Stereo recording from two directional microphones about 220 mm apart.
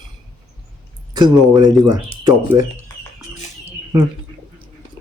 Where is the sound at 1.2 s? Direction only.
20° right (ahead or behind).